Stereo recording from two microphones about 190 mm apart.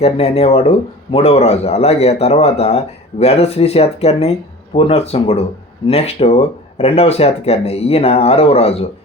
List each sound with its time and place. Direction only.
0.0 s speech: 35° left (ahead or behind)